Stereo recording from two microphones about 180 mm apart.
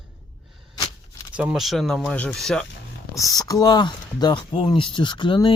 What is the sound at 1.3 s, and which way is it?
Speech, 5° right (ahead or behind).